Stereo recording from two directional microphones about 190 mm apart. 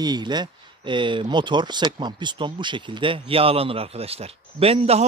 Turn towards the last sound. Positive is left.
turn(degrees=-30)  # may be behind; listen again after turning